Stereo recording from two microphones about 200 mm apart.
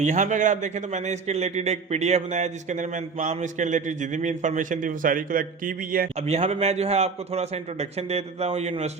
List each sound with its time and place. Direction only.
0.0 s a man's voice: 35° right (ahead or behind)
6.2 s a man's voice: 30° right (ahead or behind)